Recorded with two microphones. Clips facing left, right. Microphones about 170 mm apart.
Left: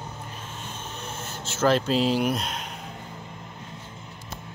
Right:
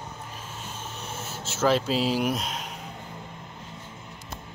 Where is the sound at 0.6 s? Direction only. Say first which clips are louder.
Left 1 dB; 5° right (ahead or behind).